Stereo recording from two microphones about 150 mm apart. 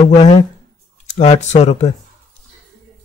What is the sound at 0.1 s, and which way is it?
Speech, 40° left (ahead or behind).